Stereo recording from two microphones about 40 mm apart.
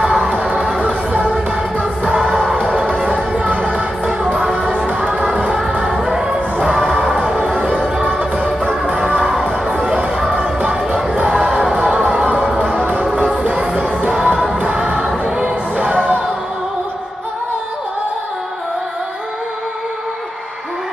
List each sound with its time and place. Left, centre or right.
0.1 s a sound: centre
0.7 s music: right
2.1 s music: centre
3.3 s music: right
4.5 s music: centre
4.7 s music: right
8.8 s music: right
10.2 s music: centre
11.2 s crowd: centre
12.1 s music: right
14.7 s choir: right
15.2 s music: right